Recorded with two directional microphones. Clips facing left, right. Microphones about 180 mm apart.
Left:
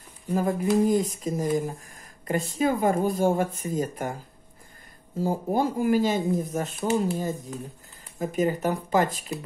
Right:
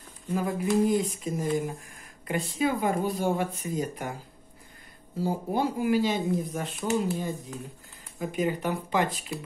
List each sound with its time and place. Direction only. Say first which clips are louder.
0.3 s a sound: left 3 dB; 45° left (ahead or behind)
2.2 s speech: left 3 dB; 45° left (ahead or behind)
5.1 s speech: left 3 dB; 45° left (ahead or behind)